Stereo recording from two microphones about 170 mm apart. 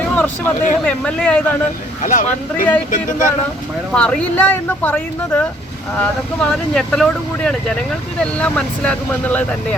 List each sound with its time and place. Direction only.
0.0 s a sound: 10° left (ahead or behind)
0.9 s speech: 5° left (ahead or behind)
2.0 s speech: 50° left (ahead or behind)
3.9 s speech: 5° left (ahead or behind)